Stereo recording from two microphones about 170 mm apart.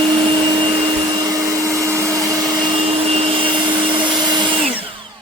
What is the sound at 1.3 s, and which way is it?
Vacuum cleaner, 20° right (ahead or behind).